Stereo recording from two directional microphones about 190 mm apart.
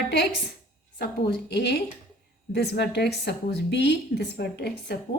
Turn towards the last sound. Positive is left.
turn(degrees=55)  # may be behind; listen again after turning